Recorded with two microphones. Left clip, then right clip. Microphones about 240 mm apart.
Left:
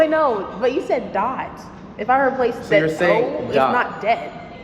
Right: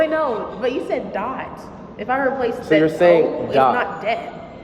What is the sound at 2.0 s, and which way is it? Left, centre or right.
Speech, centre.